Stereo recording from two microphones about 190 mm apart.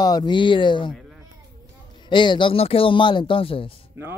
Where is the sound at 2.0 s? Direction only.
25° left (ahead or behind).